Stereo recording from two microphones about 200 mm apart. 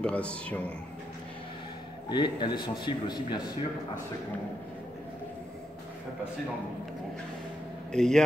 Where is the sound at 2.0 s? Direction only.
20° left (ahead or behind).